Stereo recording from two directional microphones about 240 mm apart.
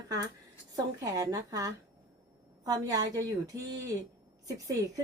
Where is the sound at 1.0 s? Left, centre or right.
Centre.